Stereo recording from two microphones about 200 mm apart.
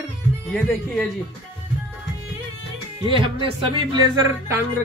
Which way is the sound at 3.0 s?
25° right (ahead or behind).